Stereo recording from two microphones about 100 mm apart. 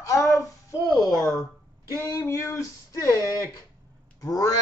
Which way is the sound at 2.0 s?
30° left (ahead or behind).